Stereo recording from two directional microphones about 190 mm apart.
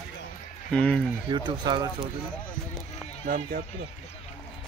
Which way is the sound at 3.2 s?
45° right (ahead or behind).